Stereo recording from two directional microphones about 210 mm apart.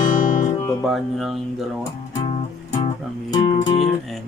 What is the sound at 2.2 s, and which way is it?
Music, 30° left (ahead or behind).